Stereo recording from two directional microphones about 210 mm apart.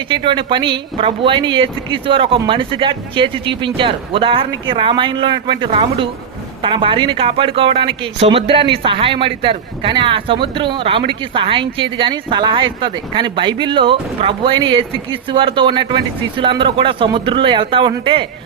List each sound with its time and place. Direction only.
0.1 s speech: 20° right (ahead or behind)